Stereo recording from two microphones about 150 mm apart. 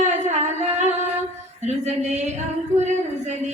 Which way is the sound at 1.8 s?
50° right (ahead or behind).